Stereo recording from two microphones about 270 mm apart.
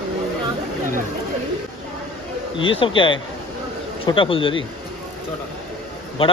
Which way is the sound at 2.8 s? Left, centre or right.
Centre.